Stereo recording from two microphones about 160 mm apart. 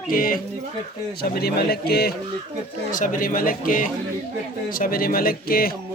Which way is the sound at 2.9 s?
55° left (ahead or behind).